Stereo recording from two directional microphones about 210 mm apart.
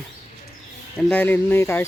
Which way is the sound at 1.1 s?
10° left (ahead or behind).